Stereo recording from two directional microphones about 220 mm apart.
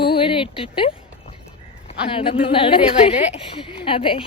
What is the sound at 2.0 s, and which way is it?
A woman's voice, 25° left (ahead or behind).